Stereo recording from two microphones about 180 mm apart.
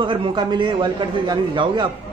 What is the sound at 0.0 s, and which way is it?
A man's voice, 25° right (ahead or behind).